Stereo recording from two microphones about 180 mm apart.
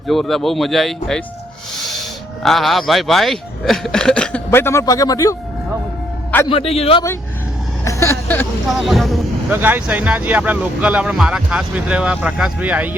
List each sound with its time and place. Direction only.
0.1 s speech: centre (ahead or behind)
2.4 s speech: centre (ahead or behind); by 5.4 s 20° left (ahead or behind)
6.5 s a man's voice: 30° left (ahead or behind)
7.9 s a sound: 15° left (ahead or behind)
8.7 s speech: centre (ahead or behind)
9.5 s speech: 10° right (ahead or behind)